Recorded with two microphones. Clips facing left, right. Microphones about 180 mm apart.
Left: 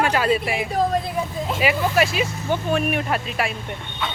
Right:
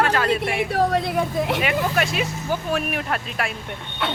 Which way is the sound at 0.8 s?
70° right (ahead or behind).